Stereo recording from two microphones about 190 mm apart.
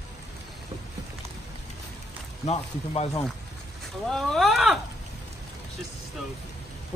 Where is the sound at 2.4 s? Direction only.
35° left (ahead or behind).